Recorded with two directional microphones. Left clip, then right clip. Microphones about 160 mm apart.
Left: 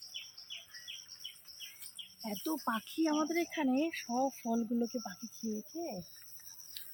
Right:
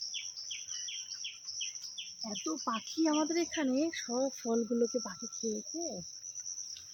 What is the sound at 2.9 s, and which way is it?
Speech, 25° right (ahead or behind).